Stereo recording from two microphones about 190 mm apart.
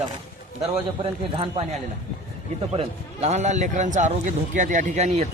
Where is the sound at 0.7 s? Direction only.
30° right (ahead or behind).